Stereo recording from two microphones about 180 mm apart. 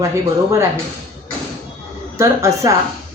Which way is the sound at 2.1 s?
15° right (ahead or behind).